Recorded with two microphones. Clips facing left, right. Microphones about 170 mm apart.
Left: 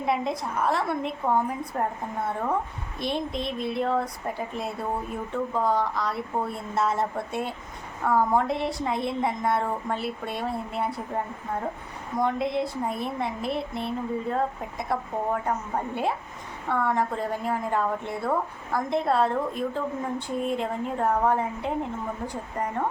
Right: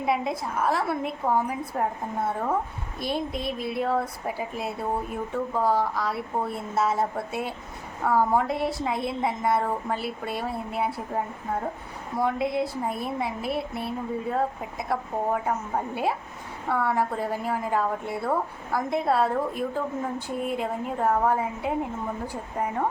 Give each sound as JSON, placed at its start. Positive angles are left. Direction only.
{"t": 0.0, "sound": "a woman's voice", "side_deg": 0}